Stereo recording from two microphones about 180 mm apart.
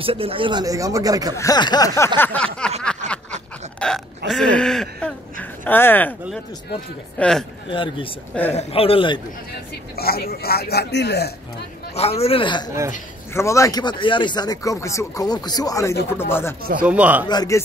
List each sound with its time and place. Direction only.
0.0 s speech: 30° right (ahead or behind)
1.3 s speech: 20° left (ahead or behind)
2.1 s a sound: 10° left (ahead or behind)
3.0 s snicker: 40° right (ahead or behind)
3.8 s hiccup: 5° left (ahead or behind)
4.3 s a sound: 5° left (ahead or behind)
7.2 s a man's voice: 5° left (ahead or behind)
7.7 s a man's voice: 30° left (ahead or behind)
9.9 s a man's voice: 55° left (ahead or behind)
11.9 s a man's voice: 35° left (ahead or behind); by 16.5 s 15° left (ahead or behind)
16.8 s speech: 5° right (ahead or behind)
17.3 s speech: 20° left (ahead or behind)